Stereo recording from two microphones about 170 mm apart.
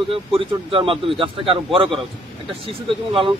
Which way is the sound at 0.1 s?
30° right (ahead or behind).